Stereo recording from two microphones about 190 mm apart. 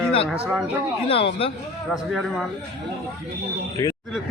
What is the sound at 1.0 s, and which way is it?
Speech, 30° left (ahead or behind).